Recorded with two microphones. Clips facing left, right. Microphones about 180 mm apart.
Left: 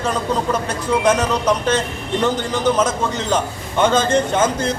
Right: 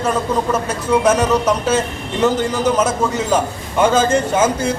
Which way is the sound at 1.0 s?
5° right (ahead or behind).